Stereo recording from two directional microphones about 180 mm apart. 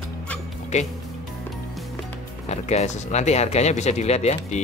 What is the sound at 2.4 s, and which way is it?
Speech, 35° left (ahead or behind).